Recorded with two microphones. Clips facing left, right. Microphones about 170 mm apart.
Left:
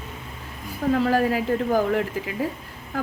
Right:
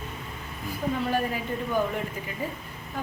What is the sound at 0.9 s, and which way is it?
A woman's voice, 90° left.